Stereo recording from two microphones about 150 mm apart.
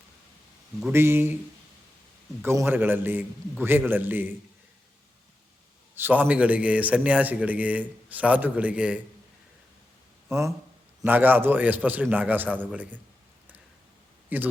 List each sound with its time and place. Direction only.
0.8 s a man's voice: 15° right (ahead or behind)
2.4 s a man's voice: 15° right (ahead or behind)
6.0 s a man's voice: 10° right (ahead or behind)
10.2 s a man's voice: 20° right (ahead or behind)
14.3 s a man's voice: 10° right (ahead or behind)